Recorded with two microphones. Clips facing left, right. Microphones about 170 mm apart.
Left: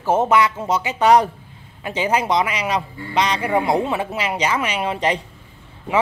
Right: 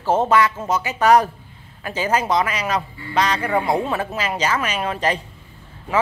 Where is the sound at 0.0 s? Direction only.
10° left (ahead or behind).